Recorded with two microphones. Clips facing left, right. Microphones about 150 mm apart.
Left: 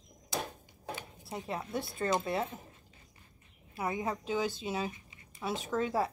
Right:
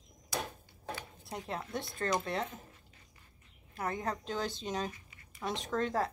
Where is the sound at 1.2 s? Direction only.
Centre (ahead or behind).